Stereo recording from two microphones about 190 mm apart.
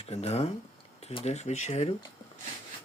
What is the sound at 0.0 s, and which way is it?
Speech, 35° left (ahead or behind).